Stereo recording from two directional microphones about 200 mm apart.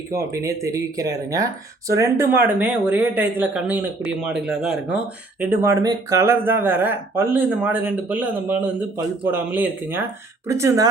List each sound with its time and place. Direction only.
0.1 s speech: 15° right (ahead or behind)